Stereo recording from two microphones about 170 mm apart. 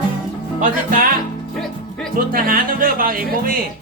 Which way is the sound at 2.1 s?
55° right (ahead or behind).